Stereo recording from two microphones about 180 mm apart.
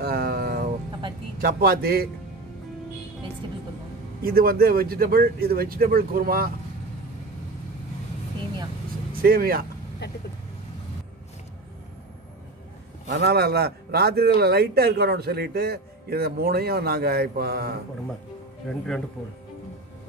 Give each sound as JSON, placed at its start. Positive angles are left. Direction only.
{"t": 0.0, "sound": "a sound", "side_deg": -60}
{"t": 1.4, "sound": "a man's voice", "side_deg": -60}
{"t": 4.2, "sound": "a man's voice", "side_deg": -55}
{"t": 9.2, "sound": "a man's voice", "side_deg": -55}
{"t": 13.1, "sound": "a man's voice", "side_deg": -65}